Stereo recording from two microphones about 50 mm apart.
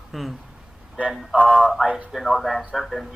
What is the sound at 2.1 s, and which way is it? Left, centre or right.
Speech, centre.